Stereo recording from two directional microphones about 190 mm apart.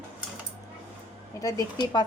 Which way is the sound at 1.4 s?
20° left (ahead or behind).